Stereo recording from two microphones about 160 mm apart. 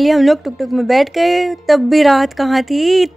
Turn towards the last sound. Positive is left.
turn(degrees=0)  # may be behind; listen again after turning